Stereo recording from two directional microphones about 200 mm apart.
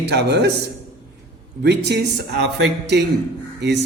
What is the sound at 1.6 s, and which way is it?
Speech, 55° right (ahead or behind).